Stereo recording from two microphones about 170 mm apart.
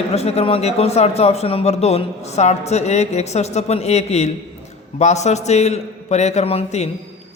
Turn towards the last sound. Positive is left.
turn(degrees=40)  # may be behind; listen again after turning